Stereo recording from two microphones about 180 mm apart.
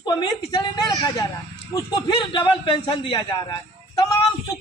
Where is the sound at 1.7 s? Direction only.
25° left (ahead or behind).